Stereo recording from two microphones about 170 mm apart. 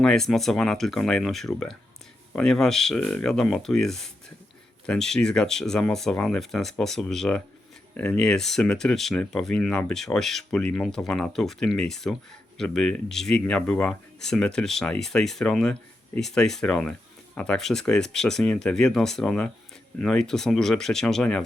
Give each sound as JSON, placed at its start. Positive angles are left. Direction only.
{"t": 0.0, "sound": "speech", "side_deg": 5}